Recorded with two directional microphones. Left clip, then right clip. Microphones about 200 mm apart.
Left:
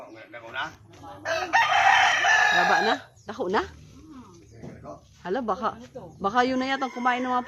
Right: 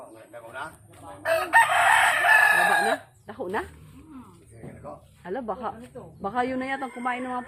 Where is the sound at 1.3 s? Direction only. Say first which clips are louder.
Right 2 dB; 45° right (ahead or behind).